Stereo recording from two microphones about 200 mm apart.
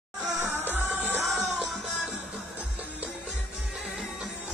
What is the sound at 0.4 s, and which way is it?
Music, 10° right (ahead or behind).